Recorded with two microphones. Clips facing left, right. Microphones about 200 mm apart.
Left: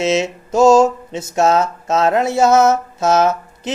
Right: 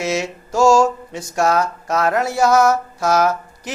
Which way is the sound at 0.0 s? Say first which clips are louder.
Left 5 dB; 25° left (ahead or behind).